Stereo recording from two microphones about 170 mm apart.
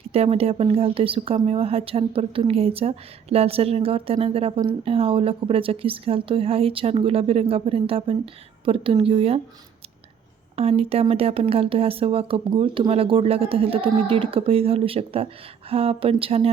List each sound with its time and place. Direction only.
0.1 s a woman's voice: 35° right (ahead or behind)
10.5 s a woman's voice: 35° right (ahead or behind)